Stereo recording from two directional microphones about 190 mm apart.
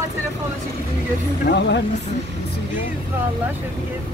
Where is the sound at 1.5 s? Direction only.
65° left (ahead or behind).